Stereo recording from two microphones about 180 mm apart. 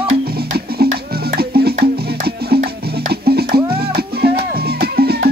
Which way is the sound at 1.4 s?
60° right (ahead or behind).